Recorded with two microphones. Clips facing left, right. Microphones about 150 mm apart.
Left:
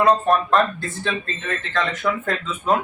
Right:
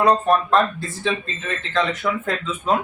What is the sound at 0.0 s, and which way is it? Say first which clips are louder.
Speech: even; centre (ahead or behind).